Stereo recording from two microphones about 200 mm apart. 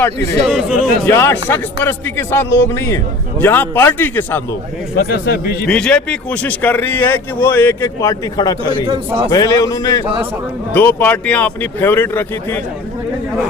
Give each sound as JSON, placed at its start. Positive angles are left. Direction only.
{"t": 0.4, "sound": "speech", "side_deg": -5}
{"t": 1.0, "sound": "speech", "side_deg": 10}
{"t": 4.9, "sound": "a man's voice", "side_deg": 50}
{"t": 5.6, "sound": "speech", "side_deg": 5}
{"t": 10.0, "sound": "a man's voice", "side_deg": -25}
{"t": 10.8, "sound": "speech", "side_deg": 10}